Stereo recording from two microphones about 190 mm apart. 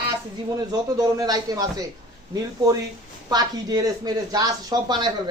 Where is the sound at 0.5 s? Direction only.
20° right (ahead or behind).